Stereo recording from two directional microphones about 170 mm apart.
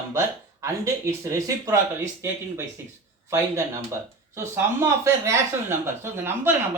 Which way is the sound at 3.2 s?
15° right (ahead or behind).